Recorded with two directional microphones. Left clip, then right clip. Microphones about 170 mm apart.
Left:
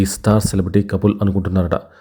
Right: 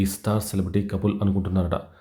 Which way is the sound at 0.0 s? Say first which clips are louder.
Left 9 dB; 45° left (ahead or behind).